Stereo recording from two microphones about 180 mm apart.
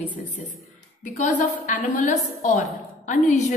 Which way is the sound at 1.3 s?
45° left (ahead or behind).